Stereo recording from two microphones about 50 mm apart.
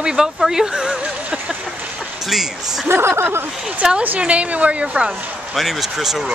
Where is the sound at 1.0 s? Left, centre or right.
Centre.